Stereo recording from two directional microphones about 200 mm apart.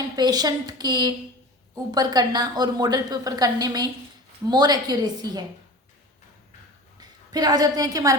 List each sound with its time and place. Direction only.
0.2 s a woman's voice: 20° right (ahead or behind)
7.0 s a woman's voice: 20° right (ahead or behind)